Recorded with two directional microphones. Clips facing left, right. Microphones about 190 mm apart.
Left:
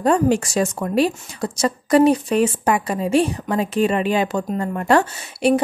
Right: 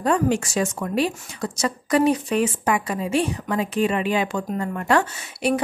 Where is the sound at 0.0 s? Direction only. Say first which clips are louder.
Left 4 dB; 35° left (ahead or behind).